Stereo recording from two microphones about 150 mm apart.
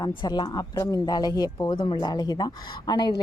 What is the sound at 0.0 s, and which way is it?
Speech, 30° left (ahead or behind).